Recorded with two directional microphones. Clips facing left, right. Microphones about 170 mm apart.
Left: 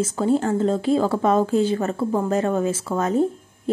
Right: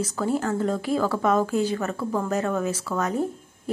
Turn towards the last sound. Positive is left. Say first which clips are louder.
# left 6 dB
turn(degrees=25)  # may be behind; listen again after turning